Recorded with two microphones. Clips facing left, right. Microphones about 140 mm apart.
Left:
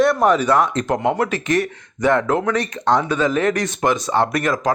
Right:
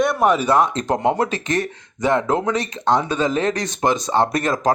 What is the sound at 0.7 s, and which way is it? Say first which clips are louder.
Speech: even; 30° right (ahead or behind).